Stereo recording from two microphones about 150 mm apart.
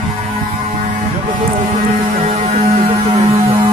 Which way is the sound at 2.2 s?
50° right (ahead or behind).